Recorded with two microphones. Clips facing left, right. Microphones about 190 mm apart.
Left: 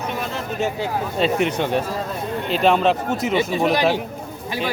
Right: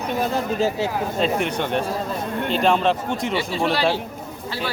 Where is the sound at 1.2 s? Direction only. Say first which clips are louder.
Left 3 dB; 5° left (ahead or behind).